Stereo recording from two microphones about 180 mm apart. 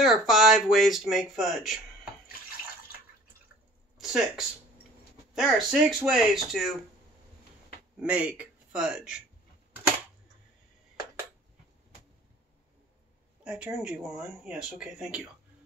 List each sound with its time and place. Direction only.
0.0 s speech: centre (ahead or behind)
4.0 s speech: centre (ahead or behind)
8.0 s a man's voice: 5° right (ahead or behind)
13.4 s speech: 5° right (ahead or behind)